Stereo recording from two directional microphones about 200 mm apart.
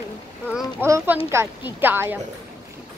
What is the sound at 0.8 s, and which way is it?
A woman's voice, 10° right (ahead or behind).